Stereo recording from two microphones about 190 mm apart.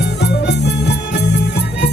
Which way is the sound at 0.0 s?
60° left (ahead or behind).